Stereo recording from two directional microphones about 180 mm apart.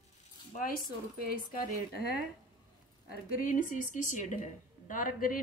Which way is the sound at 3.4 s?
45° left (ahead or behind).